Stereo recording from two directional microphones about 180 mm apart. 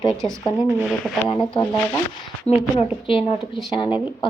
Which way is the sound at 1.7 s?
5° left (ahead or behind).